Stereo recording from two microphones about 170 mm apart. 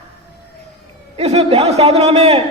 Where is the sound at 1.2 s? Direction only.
40° right (ahead or behind).